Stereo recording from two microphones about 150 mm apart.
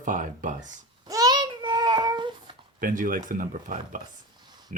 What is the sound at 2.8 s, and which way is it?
Speech, 65° right (ahead or behind).